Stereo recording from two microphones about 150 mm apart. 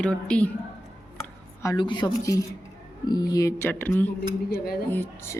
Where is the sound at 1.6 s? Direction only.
30° left (ahead or behind).